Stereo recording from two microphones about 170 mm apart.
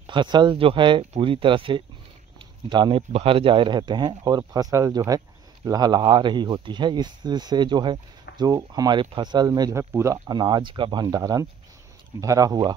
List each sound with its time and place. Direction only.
0.0 s speech: 25° right (ahead or behind)
3.0 s speech: 35° right (ahead or behind)